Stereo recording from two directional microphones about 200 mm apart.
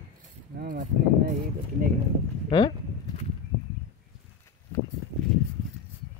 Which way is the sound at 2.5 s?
25° left (ahead or behind).